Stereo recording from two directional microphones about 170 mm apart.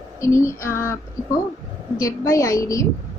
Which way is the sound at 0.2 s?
15° left (ahead or behind).